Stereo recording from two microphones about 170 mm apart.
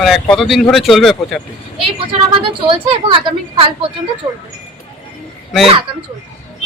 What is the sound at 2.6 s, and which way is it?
Speech, 30° right (ahead or behind).